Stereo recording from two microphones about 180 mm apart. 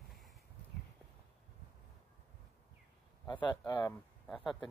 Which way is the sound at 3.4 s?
25° left (ahead or behind).